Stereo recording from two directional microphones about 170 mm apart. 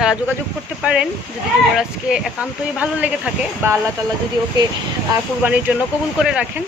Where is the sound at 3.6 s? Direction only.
15° right (ahead or behind).